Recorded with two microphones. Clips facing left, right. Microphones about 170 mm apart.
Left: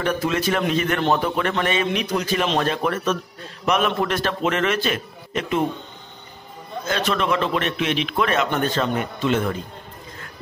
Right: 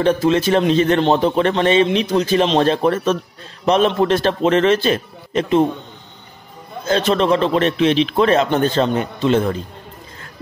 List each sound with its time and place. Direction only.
0.0 s a man's voice: 30° right (ahead or behind)
6.9 s a man's voice: 30° right (ahead or behind)